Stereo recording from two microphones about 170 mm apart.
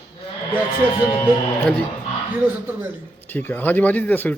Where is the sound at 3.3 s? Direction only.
10° left (ahead or behind).